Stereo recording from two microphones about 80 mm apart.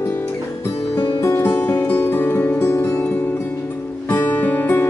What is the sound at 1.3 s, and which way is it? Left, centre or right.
Music, left.